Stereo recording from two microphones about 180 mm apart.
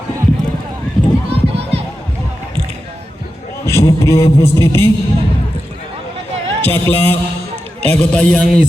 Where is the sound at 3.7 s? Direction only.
15° left (ahead or behind).